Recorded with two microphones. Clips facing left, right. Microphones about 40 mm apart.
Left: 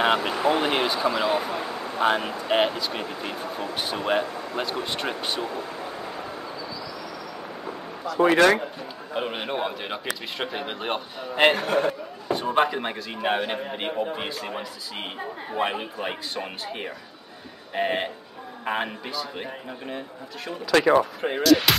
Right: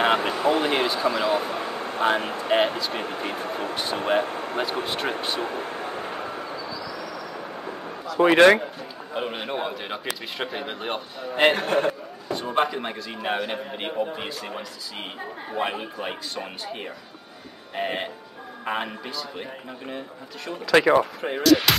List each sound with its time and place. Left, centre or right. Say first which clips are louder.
0.0 s a sound: right 1 dB; centre
0.3 s a man's voice: right 1 dB; centre
1.5 s a sound: right 1 dB; right
2.1 s speech: right 1 dB; right
2.9 s speech: right 2 dB; right
4.8 s speech: right 2 dB; centre
5.4 s vehicle: right 2 dB; right
6.8 s train: right 2 dB; right
8.3 s speech: right 4 dB; right
9.1 s a man's voice: left 1 dB; centre
11.5 s speech: right 1 dB; right
12.3 s a man's voice: left 2 dB; centre
20.8 s speech: even; centre